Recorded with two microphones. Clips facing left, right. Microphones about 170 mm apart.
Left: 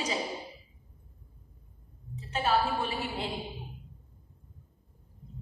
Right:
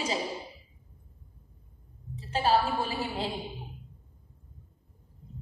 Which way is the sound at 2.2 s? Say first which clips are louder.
Right 2 dB; 30° right (ahead or behind).